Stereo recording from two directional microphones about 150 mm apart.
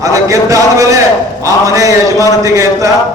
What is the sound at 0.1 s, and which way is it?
A man's voice, 20° right (ahead or behind).